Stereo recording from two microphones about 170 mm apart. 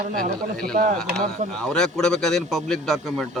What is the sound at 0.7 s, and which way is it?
Speech, 45° right (ahead or behind).